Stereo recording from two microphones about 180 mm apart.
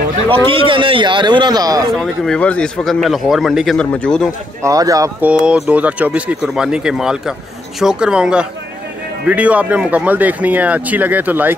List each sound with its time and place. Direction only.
0.3 s a man's voice: 30° right (ahead or behind)
2.0 s speech: 5° left (ahead or behind)
4.6 s a man's voice: 20° right (ahead or behind)
5.2 s speech: 5° right (ahead or behind)